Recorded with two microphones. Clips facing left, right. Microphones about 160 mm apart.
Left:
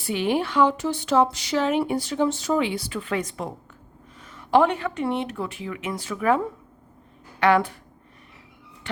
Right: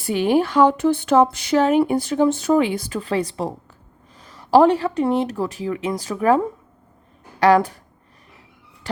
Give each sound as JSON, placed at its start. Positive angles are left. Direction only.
{"t": 0.0, "sound": "speech", "side_deg": -45}